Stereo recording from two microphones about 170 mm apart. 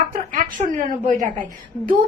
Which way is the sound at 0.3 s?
50° right (ahead or behind).